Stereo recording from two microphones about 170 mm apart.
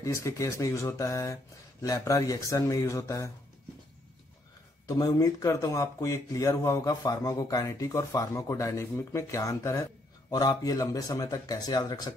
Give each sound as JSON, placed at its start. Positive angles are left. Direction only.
{"t": 0.0, "sound": "speech", "side_deg": 15}
{"t": 4.8, "sound": "speech", "side_deg": 20}